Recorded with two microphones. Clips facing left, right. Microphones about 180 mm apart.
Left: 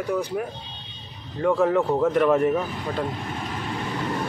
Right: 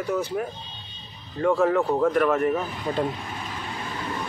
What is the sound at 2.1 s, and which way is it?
Speech, 20° left (ahead or behind).